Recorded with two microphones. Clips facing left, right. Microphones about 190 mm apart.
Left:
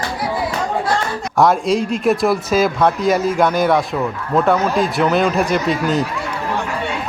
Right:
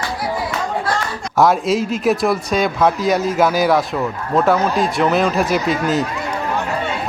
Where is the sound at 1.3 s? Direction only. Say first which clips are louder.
Even; centre (ahead or behind).